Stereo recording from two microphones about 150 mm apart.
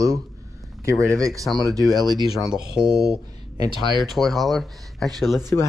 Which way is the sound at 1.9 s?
25° right (ahead or behind).